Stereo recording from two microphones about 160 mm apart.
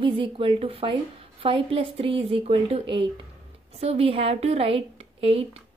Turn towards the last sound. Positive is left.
turn(degrees=-40)  # may be behind; listen again after turning